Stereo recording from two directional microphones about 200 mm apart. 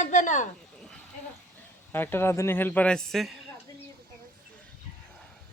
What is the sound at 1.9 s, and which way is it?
A man's voice, 10° left (ahead or behind).